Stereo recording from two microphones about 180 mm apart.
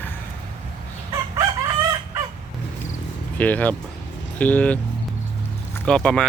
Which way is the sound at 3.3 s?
10° left (ahead or behind).